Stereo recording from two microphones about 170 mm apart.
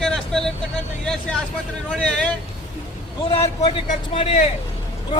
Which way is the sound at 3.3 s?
35° left (ahead or behind).